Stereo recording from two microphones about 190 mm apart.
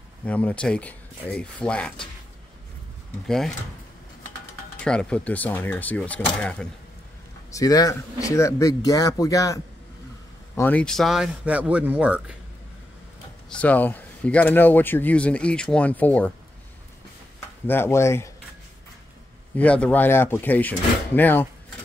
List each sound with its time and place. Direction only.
0.2 s speech: 5° left (ahead or behind)
3.3 s a man's voice: centre (ahead or behind)
4.7 s speech: 5° left (ahead or behind)
7.5 s a man's voice: 20° left (ahead or behind); by 12.4 s 5° right (ahead or behind)
13.5 s speech: 5° left (ahead or behind)
17.6 s speech: 10° left (ahead or behind)
19.5 s speech: 5° left (ahead or behind)